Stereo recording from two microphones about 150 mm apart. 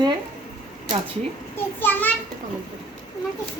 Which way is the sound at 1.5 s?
15° left (ahead or behind).